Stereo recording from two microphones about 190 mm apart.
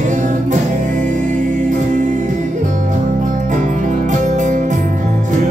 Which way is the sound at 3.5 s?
40° right (ahead or behind).